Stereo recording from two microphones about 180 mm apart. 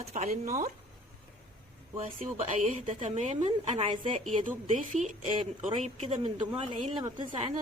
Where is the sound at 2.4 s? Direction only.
40° right (ahead or behind).